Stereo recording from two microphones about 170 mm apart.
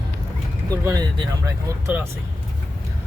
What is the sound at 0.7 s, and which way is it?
Speech, 20° right (ahead or behind).